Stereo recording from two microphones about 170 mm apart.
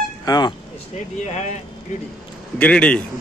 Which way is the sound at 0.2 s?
25° left (ahead or behind).